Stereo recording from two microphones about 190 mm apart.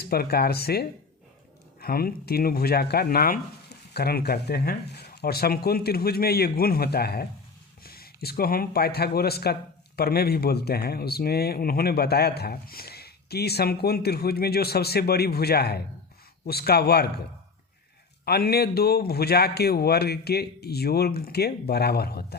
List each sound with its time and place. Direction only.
0.1 s speech: 55° left (ahead or behind)
18.3 s speech: 55° left (ahead or behind)